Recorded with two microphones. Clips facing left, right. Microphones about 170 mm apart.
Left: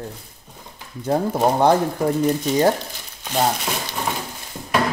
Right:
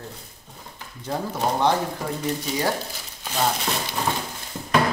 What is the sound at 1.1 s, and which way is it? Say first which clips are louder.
Speech: left 7 dB; 45° left (ahead or behind).